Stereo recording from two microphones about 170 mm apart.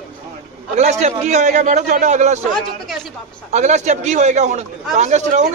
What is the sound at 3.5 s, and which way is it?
A man's voice, 45° right (ahead or behind).